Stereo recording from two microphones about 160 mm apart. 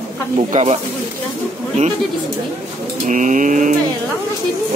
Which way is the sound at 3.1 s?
55° right (ahead or behind).